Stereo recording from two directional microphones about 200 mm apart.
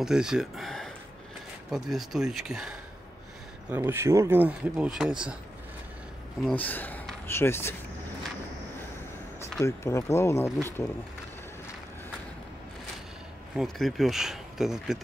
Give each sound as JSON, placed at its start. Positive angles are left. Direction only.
{"t": 0.0, "sound": "speech", "side_deg": -5}
{"t": 6.4, "sound": "speech", "side_deg": 10}
{"t": 9.7, "sound": "speech", "side_deg": 15}
{"t": 13.6, "sound": "speech", "side_deg": 0}